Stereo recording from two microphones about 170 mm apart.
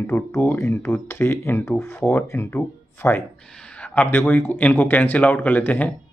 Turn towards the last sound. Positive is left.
turn(degrees=10)  # may be behind; listen again after turning